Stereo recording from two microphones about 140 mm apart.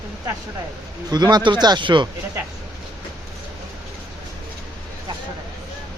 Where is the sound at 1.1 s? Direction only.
30° right (ahead or behind).